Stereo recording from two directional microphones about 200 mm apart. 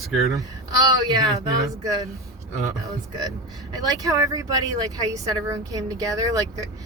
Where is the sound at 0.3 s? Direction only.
20° right (ahead or behind).